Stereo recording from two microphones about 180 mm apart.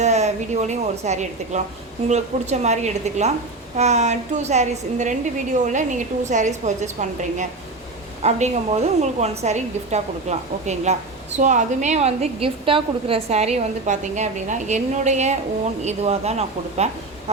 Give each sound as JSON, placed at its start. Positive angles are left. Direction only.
{"t": 0.0, "sound": "a woman's voice", "side_deg": -40}